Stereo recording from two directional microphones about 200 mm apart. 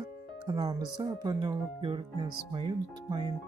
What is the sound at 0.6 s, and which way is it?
Speech, 20° right (ahead or behind).